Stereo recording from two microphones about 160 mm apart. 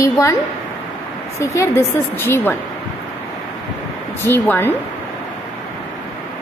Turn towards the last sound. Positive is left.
turn(degrees=10)  # may be behind; listen again after turning